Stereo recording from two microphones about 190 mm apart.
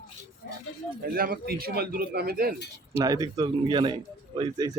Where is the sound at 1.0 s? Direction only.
50° right (ahead or behind).